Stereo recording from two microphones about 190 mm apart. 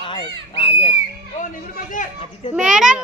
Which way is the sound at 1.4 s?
45° left (ahead or behind).